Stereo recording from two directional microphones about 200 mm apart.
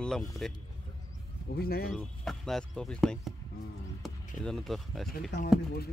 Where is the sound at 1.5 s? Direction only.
50° left (ahead or behind).